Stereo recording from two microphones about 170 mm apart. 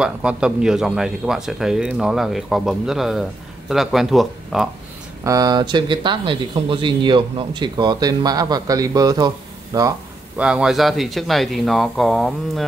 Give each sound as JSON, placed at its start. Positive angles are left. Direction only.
{"t": 0.0, "sound": "speech", "side_deg": -5}
{"t": 5.2, "sound": "speech", "side_deg": -20}
{"t": 10.3, "sound": "speech", "side_deg": -5}